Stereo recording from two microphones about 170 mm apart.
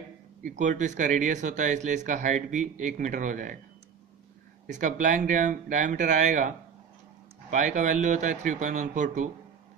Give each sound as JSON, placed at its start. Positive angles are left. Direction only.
{"t": 0.4, "sound": "speech", "side_deg": -50}
{"t": 4.6, "sound": "speech", "side_deg": -45}
{"t": 7.5, "sound": "speech", "side_deg": -50}